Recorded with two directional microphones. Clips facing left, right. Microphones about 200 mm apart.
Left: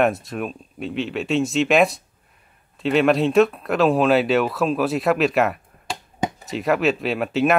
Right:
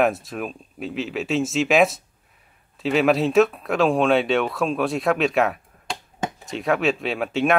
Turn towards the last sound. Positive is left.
turn(degrees=0)  # may be behind; listen again after turning